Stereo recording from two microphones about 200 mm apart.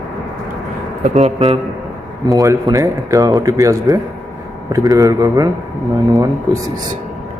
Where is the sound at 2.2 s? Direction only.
15° right (ahead or behind).